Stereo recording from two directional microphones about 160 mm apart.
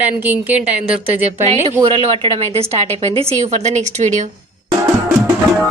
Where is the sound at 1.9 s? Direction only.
35° right (ahead or behind).